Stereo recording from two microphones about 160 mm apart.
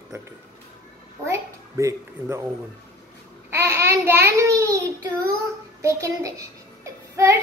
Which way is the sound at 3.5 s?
15° right (ahead or behind).